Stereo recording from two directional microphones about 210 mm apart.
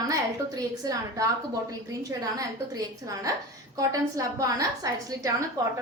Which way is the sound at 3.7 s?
15° right (ahead or behind).